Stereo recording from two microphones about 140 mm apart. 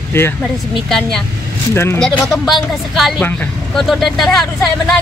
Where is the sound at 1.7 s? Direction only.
15° left (ahead or behind).